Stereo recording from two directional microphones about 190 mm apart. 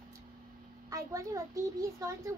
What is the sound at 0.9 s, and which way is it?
A child's voice, 15° right (ahead or behind).